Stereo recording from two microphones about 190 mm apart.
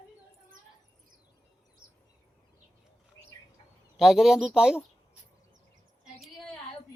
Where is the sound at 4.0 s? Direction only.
Centre (ahead or behind).